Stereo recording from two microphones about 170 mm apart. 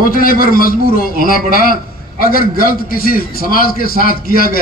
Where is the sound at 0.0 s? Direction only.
55° left (ahead or behind).